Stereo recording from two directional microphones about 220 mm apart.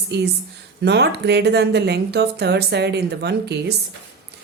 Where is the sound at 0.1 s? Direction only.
50° right (ahead or behind).